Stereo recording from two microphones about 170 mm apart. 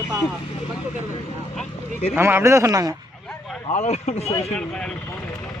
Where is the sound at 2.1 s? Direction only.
15° right (ahead or behind).